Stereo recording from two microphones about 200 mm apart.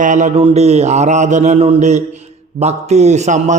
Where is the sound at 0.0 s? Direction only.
40° right (ahead or behind).